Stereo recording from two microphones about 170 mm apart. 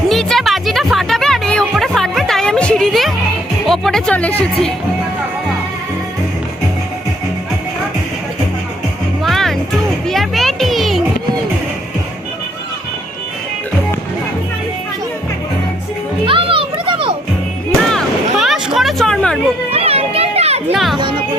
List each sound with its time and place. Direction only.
0.1 s music: centre (ahead or behind)
9.2 s music: centre (ahead or behind)
16.2 s music: 30° right (ahead or behind)
17.9 s a sound: centre (ahead or behind)
19.7 s children playing: 35° right (ahead or behind)
20.7 s children playing: centre (ahead or behind)